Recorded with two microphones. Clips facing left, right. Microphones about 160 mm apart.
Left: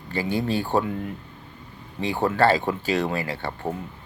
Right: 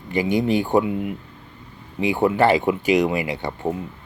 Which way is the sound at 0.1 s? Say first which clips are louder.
Right 5 dB; 15° right (ahead or behind).